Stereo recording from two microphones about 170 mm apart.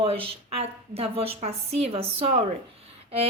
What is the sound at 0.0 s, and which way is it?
A woman's voice, 35° right (ahead or behind).